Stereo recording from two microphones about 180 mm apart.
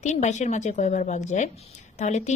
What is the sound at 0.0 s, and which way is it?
Speech, 40° left (ahead or behind).